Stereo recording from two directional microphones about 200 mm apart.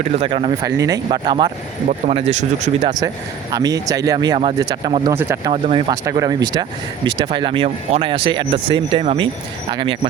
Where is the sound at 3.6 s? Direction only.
20° right (ahead or behind).